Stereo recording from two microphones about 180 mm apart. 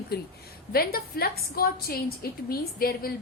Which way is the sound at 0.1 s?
60° left (ahead or behind).